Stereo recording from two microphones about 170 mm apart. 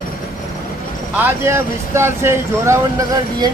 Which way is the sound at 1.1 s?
15° right (ahead or behind).